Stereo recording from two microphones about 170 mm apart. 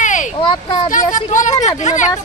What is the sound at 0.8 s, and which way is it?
Speech, 50° left (ahead or behind).